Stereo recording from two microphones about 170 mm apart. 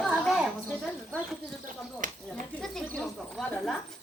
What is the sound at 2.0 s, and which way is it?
Speech, 50° right (ahead or behind).